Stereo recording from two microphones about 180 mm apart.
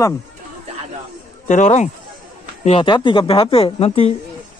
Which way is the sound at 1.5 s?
40° left (ahead or behind).